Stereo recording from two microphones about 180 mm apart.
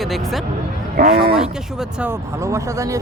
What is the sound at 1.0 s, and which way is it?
Speech, 60° right (ahead or behind).